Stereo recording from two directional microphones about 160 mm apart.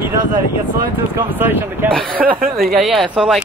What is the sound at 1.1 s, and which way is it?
Speech, 15° right (ahead or behind).